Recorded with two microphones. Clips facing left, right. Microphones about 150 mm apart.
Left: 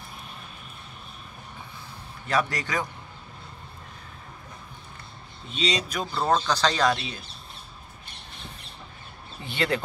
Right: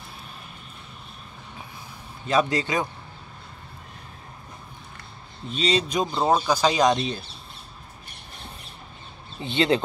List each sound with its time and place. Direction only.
2.2 s a man's voice: 20° right (ahead or behind)
5.6 s speech: 35° right (ahead or behind)
5.9 s speech: 20° right (ahead or behind)
9.4 s a man's voice: 25° right (ahead or behind)